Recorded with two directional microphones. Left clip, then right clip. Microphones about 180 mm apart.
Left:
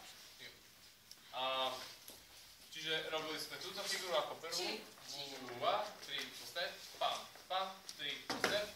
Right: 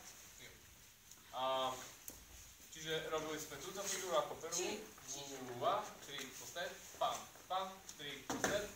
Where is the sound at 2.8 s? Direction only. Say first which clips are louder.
Left 2 dB; 5° left (ahead or behind).